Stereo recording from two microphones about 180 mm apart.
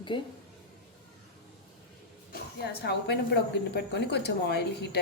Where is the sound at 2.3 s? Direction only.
65° left (ahead or behind).